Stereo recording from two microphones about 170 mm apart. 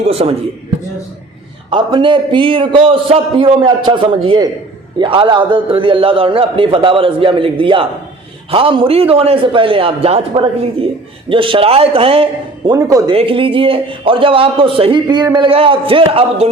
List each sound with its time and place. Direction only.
0.1 s a man's voice: 35° right (ahead or behind)
1.7 s a man's voice: 30° right (ahead or behind)
13.1 s a man's voice: 30° right (ahead or behind)
15.0 s a man's voice: 20° right (ahead or behind)